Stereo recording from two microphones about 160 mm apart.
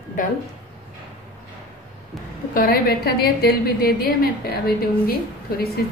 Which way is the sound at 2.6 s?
70° left (ahead or behind).